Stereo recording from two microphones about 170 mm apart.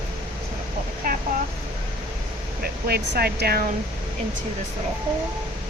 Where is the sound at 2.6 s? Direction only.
65° right (ahead or behind).